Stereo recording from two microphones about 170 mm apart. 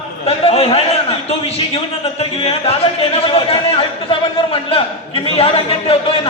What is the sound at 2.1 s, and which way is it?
A man's voice, 35° left (ahead or behind).